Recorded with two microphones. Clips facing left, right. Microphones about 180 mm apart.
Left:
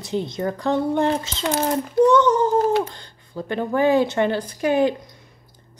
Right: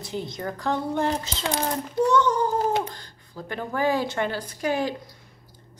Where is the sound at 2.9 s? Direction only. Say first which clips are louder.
Left 3 dB; 25° left (ahead or behind).